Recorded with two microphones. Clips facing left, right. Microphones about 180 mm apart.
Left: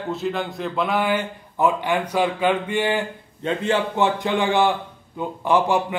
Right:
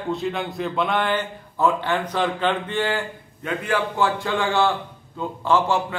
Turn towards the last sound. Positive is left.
turn(degrees=15)  # may be behind; listen again after turning